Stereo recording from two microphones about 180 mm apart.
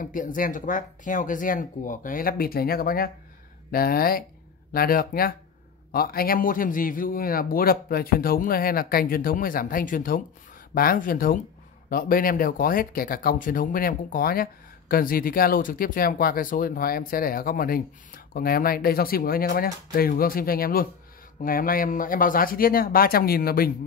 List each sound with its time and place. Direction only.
0.0 s speech: 45° left (ahead or behind)